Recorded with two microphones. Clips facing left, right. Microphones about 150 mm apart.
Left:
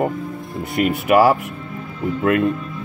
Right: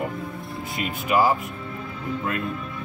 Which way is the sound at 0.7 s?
65° left (ahead or behind).